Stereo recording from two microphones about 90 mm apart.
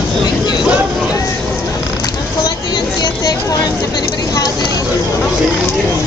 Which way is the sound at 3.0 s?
50° left (ahead or behind).